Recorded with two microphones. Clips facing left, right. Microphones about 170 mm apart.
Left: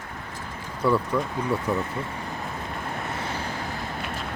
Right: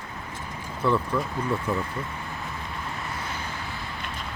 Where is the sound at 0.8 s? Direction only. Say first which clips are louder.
Left 2 dB; 10° left (ahead or behind).